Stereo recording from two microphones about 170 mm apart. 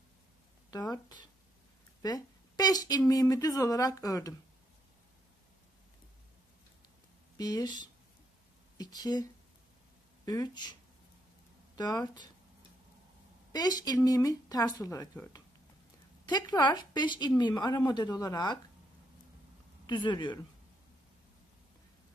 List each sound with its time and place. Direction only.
0.7 s speech: 25° left (ahead or behind)
7.3 s speech: 25° left (ahead or behind)
13.5 s speech: 25° left (ahead or behind)
16.3 s speech: 25° left (ahead or behind)
19.9 s speech: 25° left (ahead or behind)